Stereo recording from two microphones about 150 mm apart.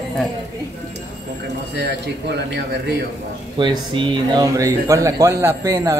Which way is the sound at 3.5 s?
30° right (ahead or behind).